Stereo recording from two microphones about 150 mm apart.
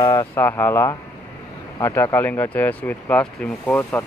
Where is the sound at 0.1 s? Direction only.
20° left (ahead or behind).